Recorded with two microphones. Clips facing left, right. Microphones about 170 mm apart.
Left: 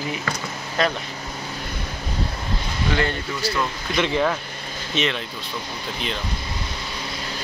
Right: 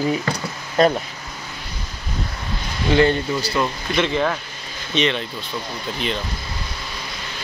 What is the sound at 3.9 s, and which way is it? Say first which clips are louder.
Speech: even; 10° left (ahead or behind).